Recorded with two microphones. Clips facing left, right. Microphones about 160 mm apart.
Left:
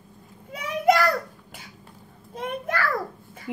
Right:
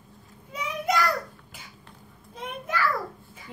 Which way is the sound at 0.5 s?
55° left (ahead or behind).